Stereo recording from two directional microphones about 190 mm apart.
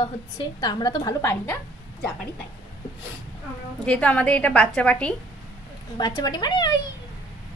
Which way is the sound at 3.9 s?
5° left (ahead or behind).